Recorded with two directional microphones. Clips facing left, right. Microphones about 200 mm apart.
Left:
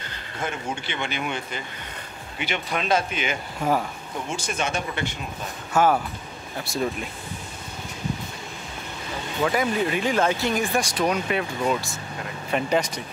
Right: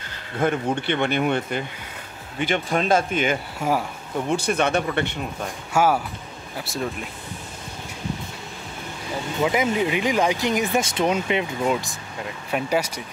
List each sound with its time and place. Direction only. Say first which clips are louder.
0.4 s speech: right 8 dB; 55° right (ahead or behind)
3.6 s speech: even; 10° right (ahead or behind)
4.3 s speech: right 7 dB; 60° right (ahead or behind)
5.7 s speech: even; 10° right (ahead or behind)
9.4 s speech: right 1 dB; 15° right (ahead or behind)